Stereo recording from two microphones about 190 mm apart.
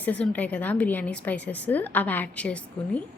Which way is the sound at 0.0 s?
5° left (ahead or behind).